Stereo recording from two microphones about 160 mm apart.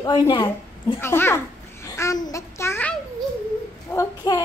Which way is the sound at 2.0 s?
20° left (ahead or behind).